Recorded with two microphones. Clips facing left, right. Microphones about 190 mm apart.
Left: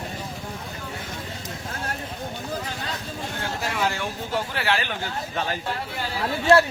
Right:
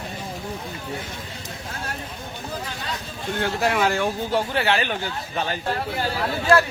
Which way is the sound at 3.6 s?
55° right (ahead or behind).